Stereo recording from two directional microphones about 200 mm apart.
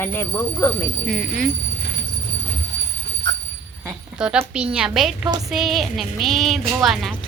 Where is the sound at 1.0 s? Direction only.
Centre (ahead or behind).